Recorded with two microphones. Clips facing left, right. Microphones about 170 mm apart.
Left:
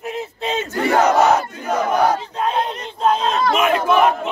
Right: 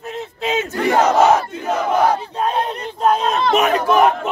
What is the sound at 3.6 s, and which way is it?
Battle cry, 40° right (ahead or behind).